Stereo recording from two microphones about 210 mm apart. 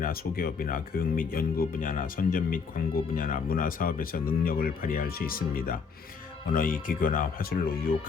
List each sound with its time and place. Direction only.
0.0 s speech: 45° left (ahead or behind)